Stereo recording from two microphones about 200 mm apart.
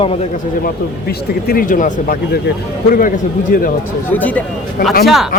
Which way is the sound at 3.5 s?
45° left (ahead or behind).